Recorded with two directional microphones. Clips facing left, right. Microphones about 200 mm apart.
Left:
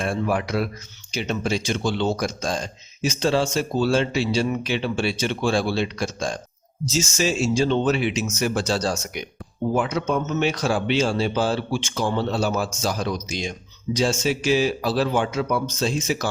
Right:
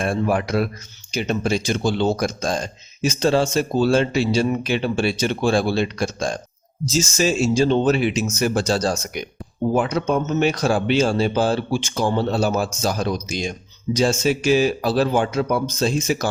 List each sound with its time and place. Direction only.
0.0 s speech: 50° right (ahead or behind)